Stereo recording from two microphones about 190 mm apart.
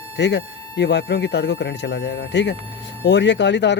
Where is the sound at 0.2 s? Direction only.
65° left (ahead or behind).